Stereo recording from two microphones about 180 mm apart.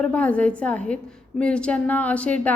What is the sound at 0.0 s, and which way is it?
A woman's voice, 5° left (ahead or behind).